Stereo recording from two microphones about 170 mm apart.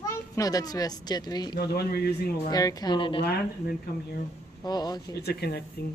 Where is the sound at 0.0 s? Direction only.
20° left (ahead or behind).